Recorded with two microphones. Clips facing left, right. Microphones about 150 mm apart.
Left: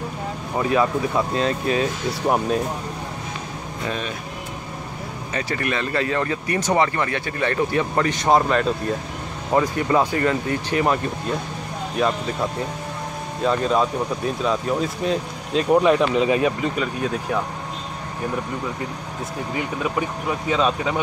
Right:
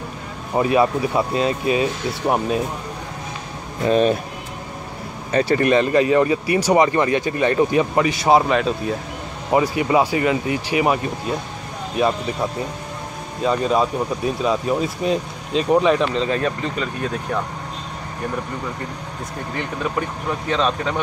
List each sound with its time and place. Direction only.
0.6 s speech: 10° right (ahead or behind)
3.8 s speech: 25° right (ahead or behind)
5.3 s speech: 30° right (ahead or behind); by 11.3 s 10° right (ahead or behind)
13.4 s speech: 5° right (ahead or behind)
19.5 s speech: 5° left (ahead or behind)